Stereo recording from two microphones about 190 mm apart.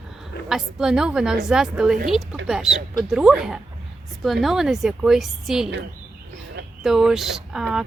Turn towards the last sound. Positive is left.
turn(degrees=0)  # may be behind; listen again after turning